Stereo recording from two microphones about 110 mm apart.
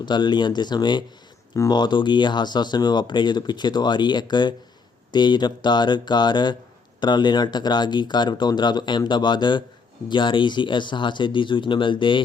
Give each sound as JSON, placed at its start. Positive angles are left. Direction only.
{"t": 0.0, "sound": "speech", "side_deg": 45}